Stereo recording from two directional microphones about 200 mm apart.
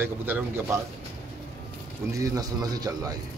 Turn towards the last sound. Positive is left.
turn(degrees=-20)  # may be behind; listen again after turning